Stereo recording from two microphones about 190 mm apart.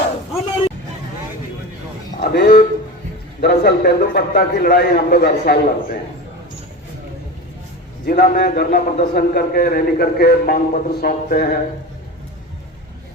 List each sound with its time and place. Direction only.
2.2 s a sound: 55° left (ahead or behind)
3.4 s a man's voice: 55° left (ahead or behind)
8.0 s a man's voice: 55° left (ahead or behind)